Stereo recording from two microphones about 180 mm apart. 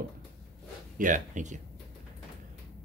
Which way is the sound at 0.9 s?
45° right (ahead or behind).